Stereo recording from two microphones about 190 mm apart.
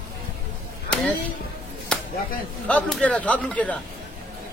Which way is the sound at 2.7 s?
5° left (ahead or behind).